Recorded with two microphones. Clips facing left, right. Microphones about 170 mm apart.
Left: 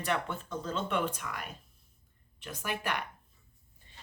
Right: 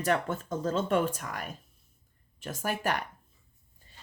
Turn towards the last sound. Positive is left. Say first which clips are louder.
# right 4 dB
turn(degrees=-40)  # may be behind; listen again after turning